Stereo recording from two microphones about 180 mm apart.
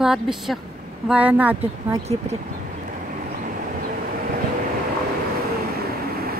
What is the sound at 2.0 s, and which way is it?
Speech, 35° right (ahead or behind).